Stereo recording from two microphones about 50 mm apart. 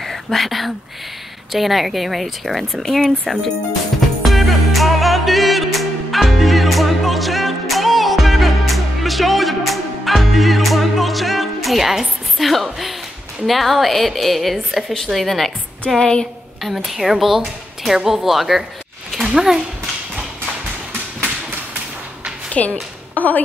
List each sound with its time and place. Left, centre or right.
0.0 s a woman's voice: centre
4.2 s music: centre
13.5 s a woman's voice: centre
16.0 s speech: centre
16.6 s a woman's voice: centre
22.5 s speech: left